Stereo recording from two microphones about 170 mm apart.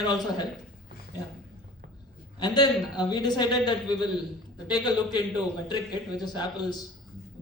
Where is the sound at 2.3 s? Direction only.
25° left (ahead or behind).